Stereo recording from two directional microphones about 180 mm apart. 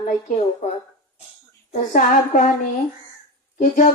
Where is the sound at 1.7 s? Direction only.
45° left (ahead or behind).